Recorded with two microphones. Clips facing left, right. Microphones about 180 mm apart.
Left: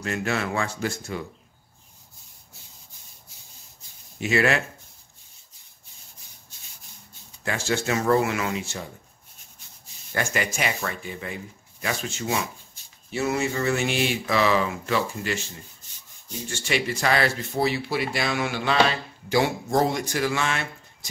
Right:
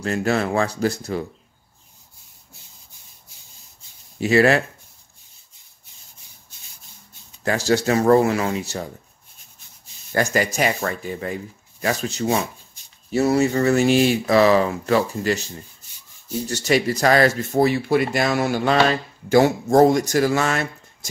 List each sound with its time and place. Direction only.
0.0 s speech: 35° right (ahead or behind)
4.2 s speech: 35° right (ahead or behind)
7.4 s speech: 40° right (ahead or behind)
10.1 s speech: 40° right (ahead or behind)
16.4 s speech: 40° right (ahead or behind)